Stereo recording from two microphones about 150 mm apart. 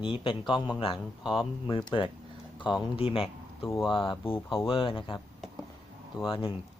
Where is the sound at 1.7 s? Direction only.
30° left (ahead or behind).